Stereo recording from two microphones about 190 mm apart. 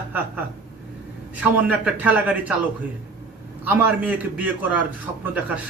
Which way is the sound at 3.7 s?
10° right (ahead or behind).